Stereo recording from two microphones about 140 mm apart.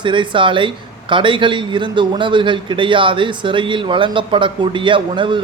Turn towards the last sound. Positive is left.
turn(degrees=-35)  # may be behind; listen again after turning